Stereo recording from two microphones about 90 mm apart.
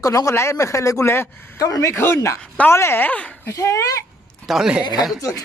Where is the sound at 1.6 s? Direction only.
40° left (ahead or behind); by 3.3 s 15° left (ahead or behind).